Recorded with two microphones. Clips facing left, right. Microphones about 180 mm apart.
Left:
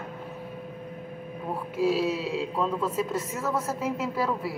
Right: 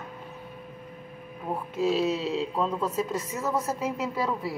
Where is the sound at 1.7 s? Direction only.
10° left (ahead or behind).